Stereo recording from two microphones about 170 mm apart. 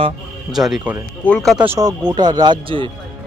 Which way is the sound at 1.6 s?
15° right (ahead or behind).